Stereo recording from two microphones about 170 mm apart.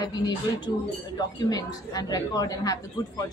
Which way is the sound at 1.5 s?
20° left (ahead or behind).